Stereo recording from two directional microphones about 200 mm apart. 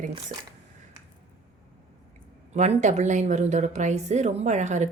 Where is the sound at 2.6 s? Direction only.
35° right (ahead or behind).